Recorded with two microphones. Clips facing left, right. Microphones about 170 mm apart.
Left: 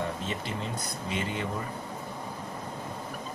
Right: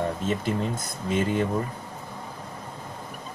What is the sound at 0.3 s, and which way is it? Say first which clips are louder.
Speech: right 7 dB; 45° right (ahead or behind).